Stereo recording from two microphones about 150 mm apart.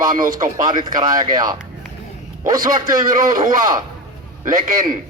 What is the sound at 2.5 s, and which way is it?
Speech, 25° right (ahead or behind).